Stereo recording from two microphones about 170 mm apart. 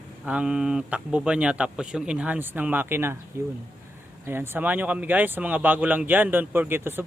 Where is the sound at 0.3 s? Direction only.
5° right (ahead or behind).